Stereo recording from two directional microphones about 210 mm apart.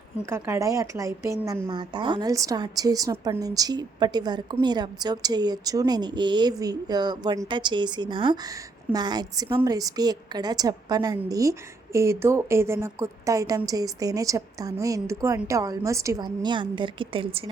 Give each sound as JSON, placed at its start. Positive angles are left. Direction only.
{"t": 0.3, "sound": "a woman's voice", "side_deg": -15}